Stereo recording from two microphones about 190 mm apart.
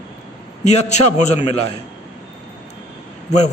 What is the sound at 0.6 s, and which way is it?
Speech, 40° left (ahead or behind).